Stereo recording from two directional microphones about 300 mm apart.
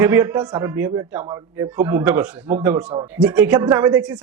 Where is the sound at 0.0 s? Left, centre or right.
Centre.